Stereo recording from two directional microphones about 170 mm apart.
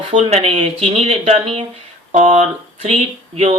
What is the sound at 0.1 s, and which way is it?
Speech, 40° right (ahead or behind).